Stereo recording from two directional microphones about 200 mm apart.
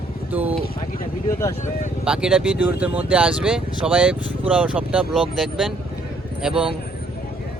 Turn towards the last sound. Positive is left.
turn(degrees=-5)  # may be behind; listen again after turning